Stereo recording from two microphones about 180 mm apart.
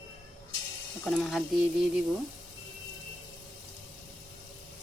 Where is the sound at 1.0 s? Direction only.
Centre (ahead or behind).